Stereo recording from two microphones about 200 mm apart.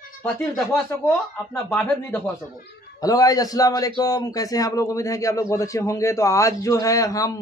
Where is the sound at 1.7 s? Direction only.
10° left (ahead or behind).